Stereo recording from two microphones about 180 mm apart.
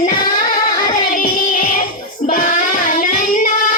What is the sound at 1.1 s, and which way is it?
Music, 50° left (ahead or behind).